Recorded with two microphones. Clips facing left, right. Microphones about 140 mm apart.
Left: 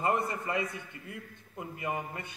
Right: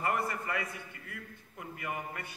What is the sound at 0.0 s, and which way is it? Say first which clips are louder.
A man's voice: left 3 dB; 20° left (ahead or behind).